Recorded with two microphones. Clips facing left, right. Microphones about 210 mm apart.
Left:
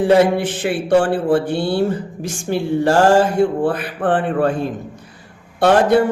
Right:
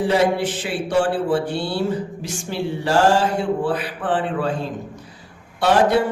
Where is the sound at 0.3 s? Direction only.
55° left (ahead or behind).